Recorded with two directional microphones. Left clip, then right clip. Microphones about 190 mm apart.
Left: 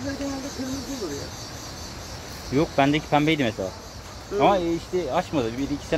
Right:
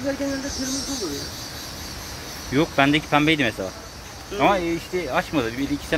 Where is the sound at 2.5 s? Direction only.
10° left (ahead or behind).